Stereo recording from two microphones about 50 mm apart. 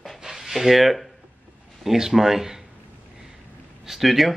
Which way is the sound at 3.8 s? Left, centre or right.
Centre.